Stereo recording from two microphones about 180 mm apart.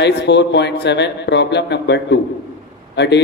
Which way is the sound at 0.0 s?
75° left (ahead or behind).